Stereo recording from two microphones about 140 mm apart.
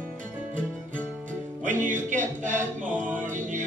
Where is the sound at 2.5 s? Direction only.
10° right (ahead or behind).